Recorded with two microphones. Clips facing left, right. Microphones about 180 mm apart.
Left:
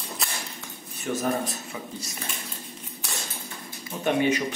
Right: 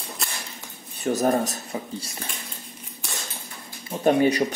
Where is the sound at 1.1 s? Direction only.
40° right (ahead or behind).